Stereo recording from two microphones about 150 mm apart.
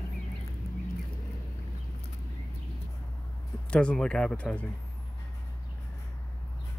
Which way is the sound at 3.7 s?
5° left (ahead or behind).